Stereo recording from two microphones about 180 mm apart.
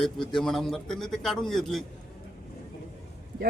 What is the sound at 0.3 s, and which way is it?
Speech, centre (ahead or behind).